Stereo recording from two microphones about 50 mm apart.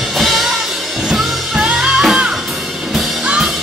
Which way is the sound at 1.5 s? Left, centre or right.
Centre.